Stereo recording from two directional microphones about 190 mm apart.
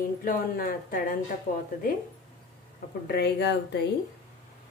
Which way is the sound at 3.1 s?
60° left (ahead or behind).